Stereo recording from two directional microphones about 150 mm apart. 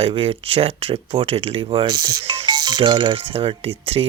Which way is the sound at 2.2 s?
45° right (ahead or behind).